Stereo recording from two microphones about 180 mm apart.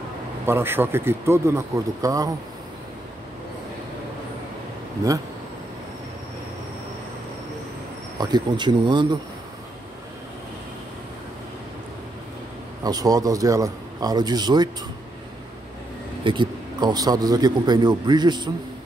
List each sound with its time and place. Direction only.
0.5 s speech: 10° right (ahead or behind)
8.2 s speech: 25° right (ahead or behind)
12.8 s speech: 20° right (ahead or behind)
16.3 s speech: 25° right (ahead or behind)